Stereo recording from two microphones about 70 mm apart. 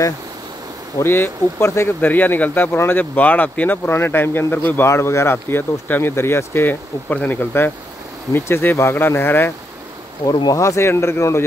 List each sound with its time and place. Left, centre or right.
1.0 s speech: left
4.8 s speech: left
10.5 s speech: left